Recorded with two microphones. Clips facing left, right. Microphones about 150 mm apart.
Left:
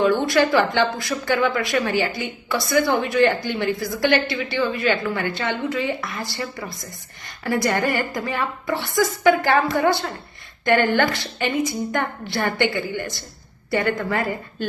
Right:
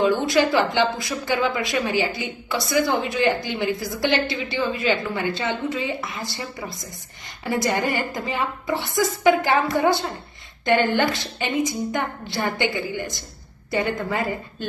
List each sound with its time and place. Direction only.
0.0 s a woman's voice: 20° right (ahead or behind)
7.4 s a woman's voice: 20° right (ahead or behind)